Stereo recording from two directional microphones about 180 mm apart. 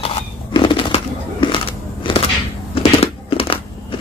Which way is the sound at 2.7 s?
30° left (ahead or behind).